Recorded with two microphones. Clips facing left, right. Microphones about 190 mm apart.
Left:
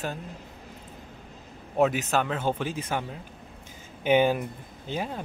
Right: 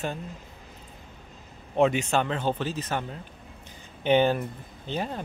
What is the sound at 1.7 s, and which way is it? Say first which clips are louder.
Speech: right 1 dB; 5° left (ahead or behind).